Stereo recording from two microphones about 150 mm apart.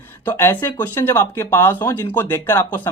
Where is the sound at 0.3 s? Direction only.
15° left (ahead or behind).